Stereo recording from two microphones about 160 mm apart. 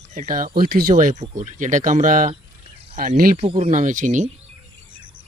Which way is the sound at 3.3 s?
40° right (ahead or behind).